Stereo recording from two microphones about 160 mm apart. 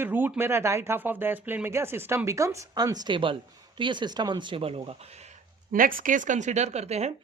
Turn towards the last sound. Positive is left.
turn(degrees=-45)  # may be behind; listen again after turning